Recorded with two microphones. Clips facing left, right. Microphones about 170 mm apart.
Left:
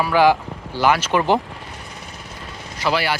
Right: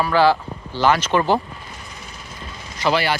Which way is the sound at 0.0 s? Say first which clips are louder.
Left 1 dB; 15° left (ahead or behind).